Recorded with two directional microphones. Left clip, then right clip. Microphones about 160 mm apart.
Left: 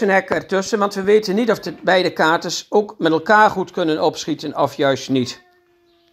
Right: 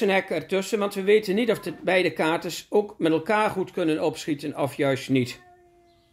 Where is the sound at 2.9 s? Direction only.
10° left (ahead or behind).